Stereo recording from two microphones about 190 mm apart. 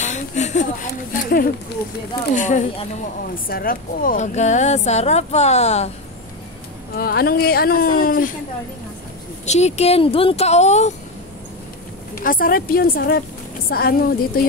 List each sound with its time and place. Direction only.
0.0 s a sound: 40° left (ahead or behind)
1.1 s speech: 50° left (ahead or behind)
7.0 s speech: 55° left (ahead or behind)
9.5 s speech: 35° left (ahead or behind)
12.2 s speech: 50° left (ahead or behind)